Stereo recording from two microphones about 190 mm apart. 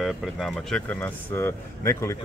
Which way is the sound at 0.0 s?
Centre (ahead or behind).